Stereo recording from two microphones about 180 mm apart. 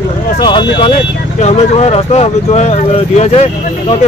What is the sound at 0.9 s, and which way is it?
Speech, 40° left (ahead or behind).